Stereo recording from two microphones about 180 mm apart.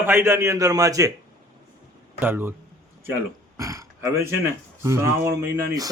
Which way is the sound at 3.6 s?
15° right (ahead or behind).